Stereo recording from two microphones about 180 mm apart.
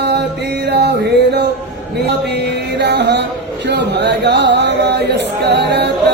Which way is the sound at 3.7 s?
70° right (ahead or behind).